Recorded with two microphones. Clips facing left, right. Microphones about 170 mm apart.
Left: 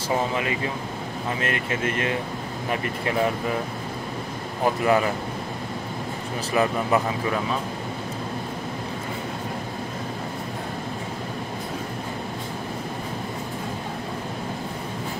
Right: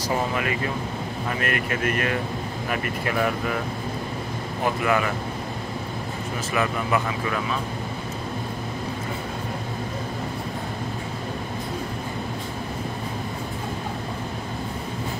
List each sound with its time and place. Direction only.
1.4 s speech: 25° left (ahead or behind)
4.8 s speech: 30° left (ahead or behind)
6.5 s speech: 35° left (ahead or behind)